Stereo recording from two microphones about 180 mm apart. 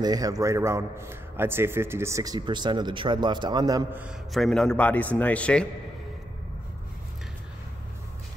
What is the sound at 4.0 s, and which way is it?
A man's voice, centre (ahead or behind).